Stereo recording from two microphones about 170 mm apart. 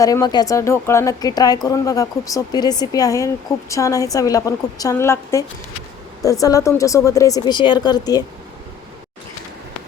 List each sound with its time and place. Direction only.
0.0 s a woman's voice: 20° left (ahead or behind)